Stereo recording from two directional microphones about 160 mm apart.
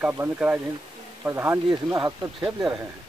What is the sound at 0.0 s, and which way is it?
Speech, 10° right (ahead or behind).